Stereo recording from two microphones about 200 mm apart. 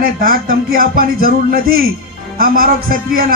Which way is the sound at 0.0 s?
45° right (ahead or behind).